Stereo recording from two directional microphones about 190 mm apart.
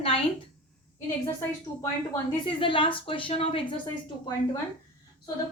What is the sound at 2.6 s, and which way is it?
A woman's voice, 25° left (ahead or behind).